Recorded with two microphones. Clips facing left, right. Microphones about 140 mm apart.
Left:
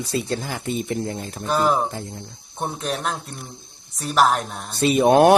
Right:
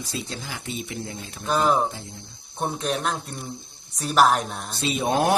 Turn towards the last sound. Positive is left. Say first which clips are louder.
# left 8 dB
turn(degrees=65)  # may be behind; listen again after turning